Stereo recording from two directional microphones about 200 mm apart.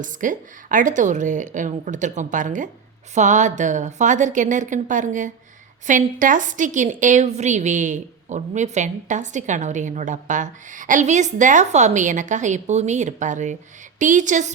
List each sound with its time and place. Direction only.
0.0 s a woman's voice: 40° right (ahead or behind)